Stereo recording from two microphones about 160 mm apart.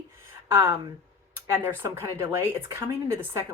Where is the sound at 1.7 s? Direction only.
15° right (ahead or behind).